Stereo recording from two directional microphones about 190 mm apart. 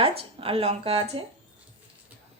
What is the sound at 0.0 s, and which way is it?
Speech, 30° right (ahead or behind).